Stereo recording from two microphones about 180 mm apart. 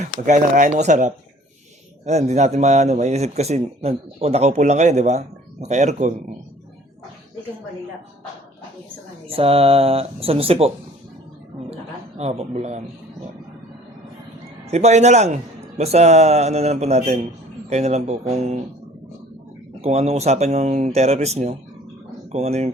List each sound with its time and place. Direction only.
0.3 s speech: 45° right (ahead or behind)
9.2 s speech: 30° right (ahead or behind)
11.7 s a sound: 35° right (ahead or behind)
14.7 s speech: 35° right (ahead or behind)
19.8 s speech: 35° right (ahead or behind)